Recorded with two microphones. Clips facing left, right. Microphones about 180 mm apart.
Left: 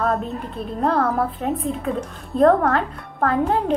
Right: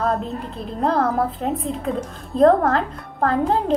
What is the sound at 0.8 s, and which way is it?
Speech, 35° right (ahead or behind).